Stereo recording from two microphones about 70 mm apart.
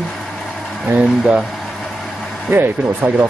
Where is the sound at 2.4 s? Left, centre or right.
Right.